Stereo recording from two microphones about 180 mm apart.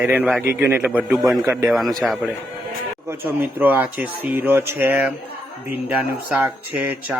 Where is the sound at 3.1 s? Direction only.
10° right (ahead or behind).